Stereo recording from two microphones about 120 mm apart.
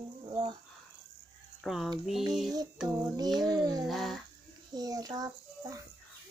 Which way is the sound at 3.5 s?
30° right (ahead or behind).